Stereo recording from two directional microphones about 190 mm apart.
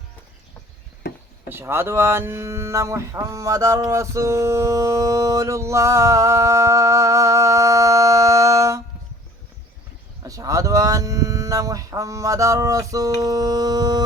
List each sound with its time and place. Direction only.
1.0 s speech: 60° left (ahead or behind)
1.5 s speech: 15° right (ahead or behind)
10.2 s speech: 20° right (ahead or behind)
13.1 s a sound: 20° right (ahead or behind)